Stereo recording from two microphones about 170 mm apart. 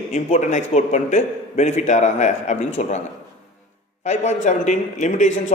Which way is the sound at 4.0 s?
45° left (ahead or behind).